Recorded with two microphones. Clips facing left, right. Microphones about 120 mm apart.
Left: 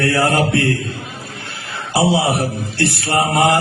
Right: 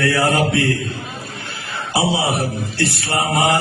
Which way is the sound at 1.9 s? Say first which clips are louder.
Left 3 dB; 60° left (ahead or behind).